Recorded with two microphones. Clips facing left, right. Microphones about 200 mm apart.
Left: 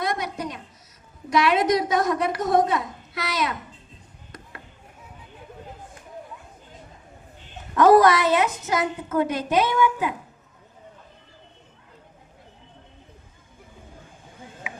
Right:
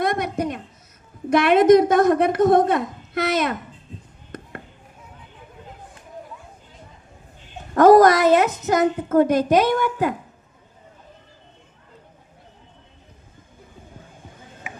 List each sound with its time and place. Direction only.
0.0 s a sound: 55° right (ahead or behind)
1.3 s a woman's voice: 55° right (ahead or behind)
7.7 s a woman's voice: 45° right (ahead or behind)